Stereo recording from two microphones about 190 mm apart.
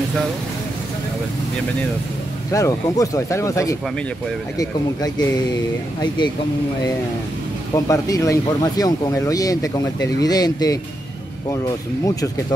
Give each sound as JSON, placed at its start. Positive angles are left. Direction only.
{"t": 2.5, "sound": "speech", "side_deg": 15}
{"t": 7.7, "sound": "speech", "side_deg": 15}
{"t": 12.0, "sound": "speech", "side_deg": 20}